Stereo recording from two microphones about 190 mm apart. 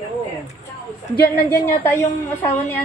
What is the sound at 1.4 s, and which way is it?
A woman's voice, 10° left (ahead or behind).